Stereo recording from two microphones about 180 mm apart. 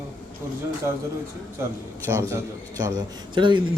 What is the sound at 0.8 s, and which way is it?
Speech, 15° right (ahead or behind).